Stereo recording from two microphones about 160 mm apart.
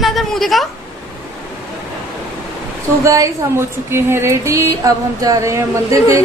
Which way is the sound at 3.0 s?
20° right (ahead or behind).